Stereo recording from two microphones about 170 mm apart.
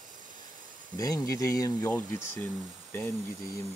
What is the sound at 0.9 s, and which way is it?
Speech, 20° left (ahead or behind).